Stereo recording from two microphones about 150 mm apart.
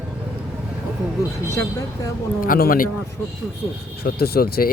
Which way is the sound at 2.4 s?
80° left.